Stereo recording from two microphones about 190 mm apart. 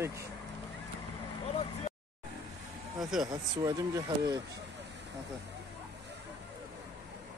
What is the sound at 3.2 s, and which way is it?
Speech, 20° right (ahead or behind).